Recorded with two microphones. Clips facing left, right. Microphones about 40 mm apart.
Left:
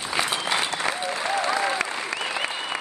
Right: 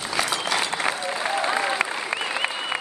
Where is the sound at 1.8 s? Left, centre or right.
Centre.